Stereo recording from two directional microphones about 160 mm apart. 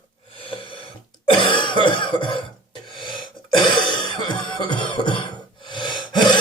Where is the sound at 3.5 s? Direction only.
30° left (ahead or behind).